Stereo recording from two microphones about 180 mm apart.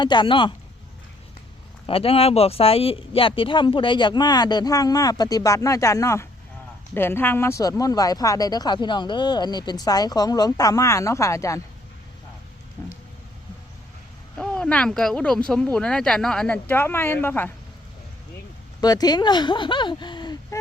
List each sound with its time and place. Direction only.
0.0 s speech: 25° left (ahead or behind)
1.9 s speech: 30° left (ahead or behind); by 11.6 s 15° left (ahead or behind)
14.3 s speech: 5° left (ahead or behind)
18.8 s speech: 20° left (ahead or behind)